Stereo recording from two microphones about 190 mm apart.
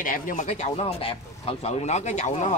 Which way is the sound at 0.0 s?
45° left (ahead or behind).